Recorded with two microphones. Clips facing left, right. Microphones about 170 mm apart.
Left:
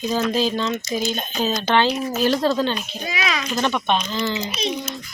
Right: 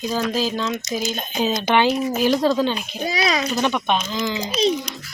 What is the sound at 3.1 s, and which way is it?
Speech, 35° right (ahead or behind).